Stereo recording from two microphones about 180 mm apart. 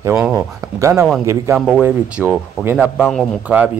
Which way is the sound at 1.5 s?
Centre (ahead or behind).